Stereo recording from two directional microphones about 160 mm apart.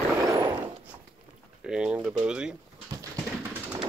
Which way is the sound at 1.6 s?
5° right (ahead or behind).